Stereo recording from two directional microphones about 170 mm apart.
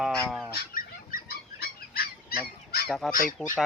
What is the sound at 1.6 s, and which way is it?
Goose, 65° left (ahead or behind).